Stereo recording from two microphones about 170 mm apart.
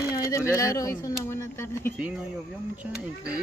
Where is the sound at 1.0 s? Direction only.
15° left (ahead or behind).